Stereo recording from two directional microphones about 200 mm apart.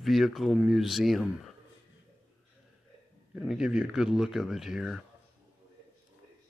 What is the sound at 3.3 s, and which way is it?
Speech, 5° right (ahead or behind).